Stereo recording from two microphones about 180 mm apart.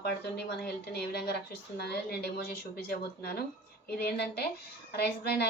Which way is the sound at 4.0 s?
65° left (ahead or behind).